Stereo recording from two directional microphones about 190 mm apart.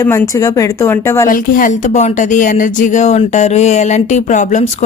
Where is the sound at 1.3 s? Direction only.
45° left (ahead or behind).